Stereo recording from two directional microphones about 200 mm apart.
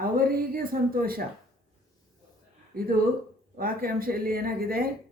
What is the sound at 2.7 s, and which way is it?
A woman's voice, 45° right (ahead or behind).